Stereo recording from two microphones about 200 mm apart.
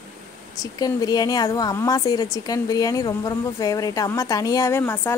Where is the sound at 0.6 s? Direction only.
20° left (ahead or behind).